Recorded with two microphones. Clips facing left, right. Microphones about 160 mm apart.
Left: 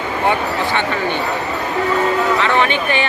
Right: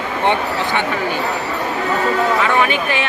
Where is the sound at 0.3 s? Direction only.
15° right (ahead or behind).